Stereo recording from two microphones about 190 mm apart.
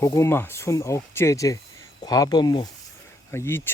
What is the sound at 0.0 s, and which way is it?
Speech, 15° left (ahead or behind).